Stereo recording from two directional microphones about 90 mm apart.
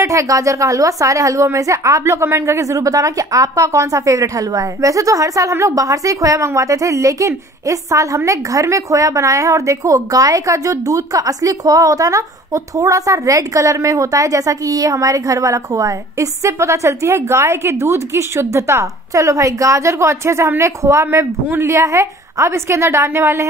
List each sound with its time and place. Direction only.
0.0 s a woman's voice: 35° right (ahead or behind)